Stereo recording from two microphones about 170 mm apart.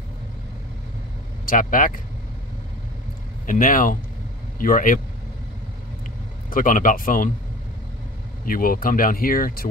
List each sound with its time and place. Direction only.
1.4 s speech: 55° left (ahead or behind)
3.4 s speech: 55° left (ahead or behind)
6.5 s speech: 55° left (ahead or behind)
8.5 s speech: 55° left (ahead or behind)